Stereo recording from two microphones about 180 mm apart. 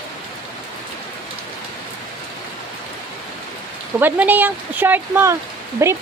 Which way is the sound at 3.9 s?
10° right (ahead or behind).